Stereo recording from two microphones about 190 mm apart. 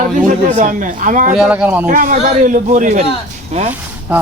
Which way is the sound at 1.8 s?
45° right (ahead or behind).